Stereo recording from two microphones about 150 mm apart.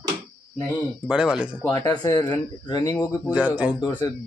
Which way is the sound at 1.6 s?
25° left (ahead or behind).